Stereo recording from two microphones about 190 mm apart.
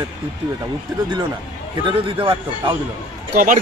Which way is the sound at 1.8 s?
25° right (ahead or behind).